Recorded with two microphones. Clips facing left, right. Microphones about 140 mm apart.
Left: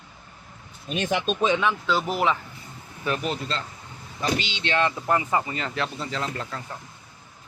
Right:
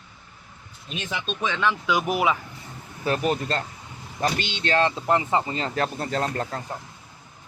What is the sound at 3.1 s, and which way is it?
Speech, 50° right (ahead or behind).